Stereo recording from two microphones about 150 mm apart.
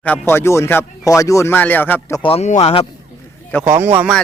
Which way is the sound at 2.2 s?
40° left (ahead or behind).